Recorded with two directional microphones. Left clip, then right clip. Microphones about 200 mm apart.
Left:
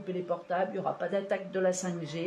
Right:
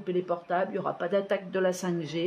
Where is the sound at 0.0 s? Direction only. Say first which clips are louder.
Right 4 dB; 50° right (ahead or behind).